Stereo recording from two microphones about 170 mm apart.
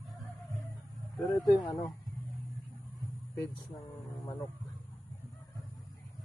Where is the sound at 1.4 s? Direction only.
25° left (ahead or behind).